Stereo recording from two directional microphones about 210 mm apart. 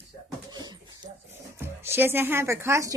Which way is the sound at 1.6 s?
10° right (ahead or behind).